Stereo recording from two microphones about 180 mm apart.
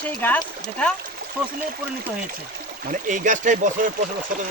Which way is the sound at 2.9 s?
45° right (ahead or behind).